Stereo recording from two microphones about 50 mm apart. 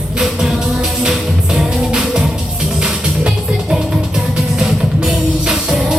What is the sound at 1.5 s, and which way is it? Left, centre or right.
Music, centre.